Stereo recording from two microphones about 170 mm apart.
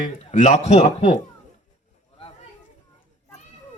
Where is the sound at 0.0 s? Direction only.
45° left (ahead or behind).